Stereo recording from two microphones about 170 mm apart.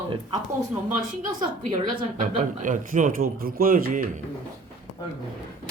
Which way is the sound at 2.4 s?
50° right (ahead or behind).